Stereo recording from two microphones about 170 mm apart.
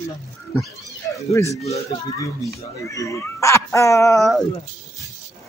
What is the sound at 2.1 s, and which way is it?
A man's voice, 20° left (ahead or behind).